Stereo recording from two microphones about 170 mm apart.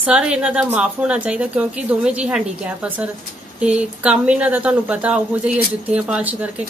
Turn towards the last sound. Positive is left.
turn(degrees=-10)  # may be behind; listen again after turning